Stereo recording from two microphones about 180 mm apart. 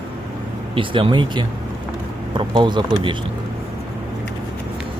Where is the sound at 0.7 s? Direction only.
30° right (ahead or behind).